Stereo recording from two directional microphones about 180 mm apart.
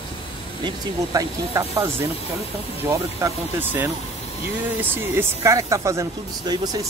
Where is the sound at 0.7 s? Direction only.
20° right (ahead or behind).